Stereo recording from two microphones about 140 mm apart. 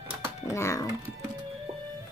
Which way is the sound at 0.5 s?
20° left (ahead or behind).